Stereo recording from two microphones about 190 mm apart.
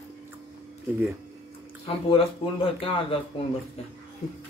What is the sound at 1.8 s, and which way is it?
A man's voice, 30° left (ahead or behind).